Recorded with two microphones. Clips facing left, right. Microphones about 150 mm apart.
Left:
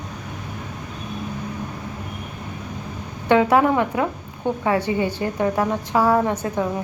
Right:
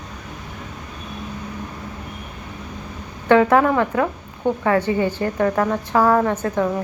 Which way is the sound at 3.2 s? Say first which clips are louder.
Right 2 dB; 15° left (ahead or behind).